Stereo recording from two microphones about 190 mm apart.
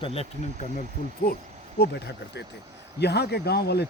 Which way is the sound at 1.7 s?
60° left (ahead or behind).